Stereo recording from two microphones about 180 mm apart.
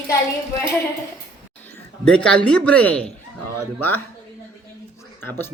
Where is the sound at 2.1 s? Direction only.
5° left (ahead or behind).